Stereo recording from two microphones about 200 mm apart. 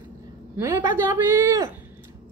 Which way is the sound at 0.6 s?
20° right (ahead or behind).